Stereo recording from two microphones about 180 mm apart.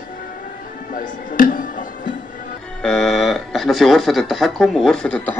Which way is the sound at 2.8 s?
5° left (ahead or behind).